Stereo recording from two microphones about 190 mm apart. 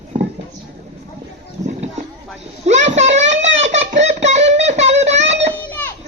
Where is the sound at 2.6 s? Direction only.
35° right (ahead or behind).